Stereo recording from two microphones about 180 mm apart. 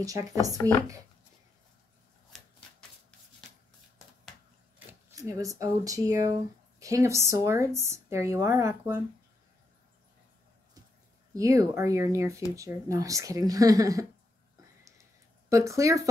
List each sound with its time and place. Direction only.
0.0 s speech: 20° right (ahead or behind)
5.1 s speech: 20° right (ahead or behind)
11.3 s speech: 20° right (ahead or behind)
15.5 s speech: 15° right (ahead or behind)